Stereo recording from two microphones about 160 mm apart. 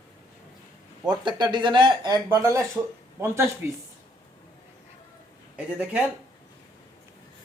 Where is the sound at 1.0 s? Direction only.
30° right (ahead or behind).